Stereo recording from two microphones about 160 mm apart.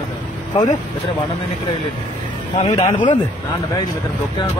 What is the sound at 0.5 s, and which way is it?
Speech, 35° left (ahead or behind).